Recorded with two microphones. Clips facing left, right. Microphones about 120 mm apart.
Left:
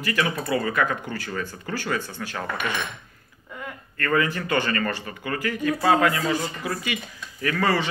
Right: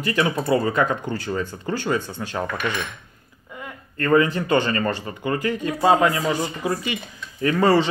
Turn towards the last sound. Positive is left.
turn(degrees=-25)  # may be behind; listen again after turning